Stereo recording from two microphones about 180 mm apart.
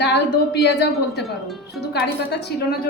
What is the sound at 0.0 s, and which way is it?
Speech, 65° left (ahead or behind).